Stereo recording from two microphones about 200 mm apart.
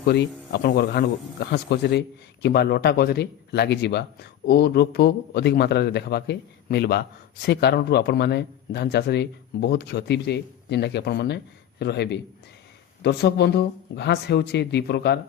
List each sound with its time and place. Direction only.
0.0 s speech: 55° left (ahead or behind)